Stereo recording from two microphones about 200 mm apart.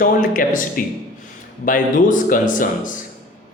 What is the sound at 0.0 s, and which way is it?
Speech, 40° left (ahead or behind).